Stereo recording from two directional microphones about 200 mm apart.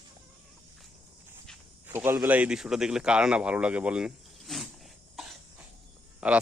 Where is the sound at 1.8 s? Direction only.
10° right (ahead or behind).